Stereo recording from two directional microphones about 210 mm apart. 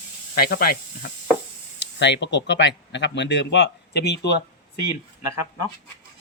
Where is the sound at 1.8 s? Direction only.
55° left (ahead or behind).